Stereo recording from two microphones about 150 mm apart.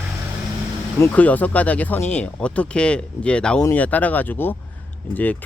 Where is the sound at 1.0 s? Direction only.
10° left (ahead or behind).